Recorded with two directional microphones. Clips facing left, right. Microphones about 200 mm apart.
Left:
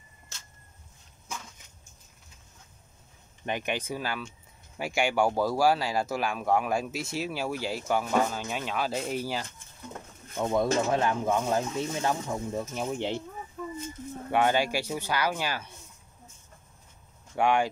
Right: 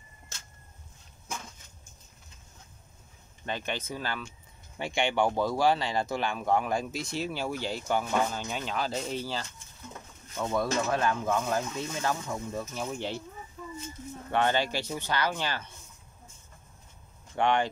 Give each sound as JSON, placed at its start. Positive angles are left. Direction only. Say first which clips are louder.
{"t": 3.4, "sound": "speech", "louder": "left 3 dB", "side_deg": 15}
{"t": 13.6, "sound": "a sound", "louder": "left 6 dB", "side_deg": 60}
{"t": 14.3, "sound": "speech", "louder": "left 2 dB", "side_deg": 10}
{"t": 17.4, "sound": "speech", "louder": "left 1 dB", "side_deg": 10}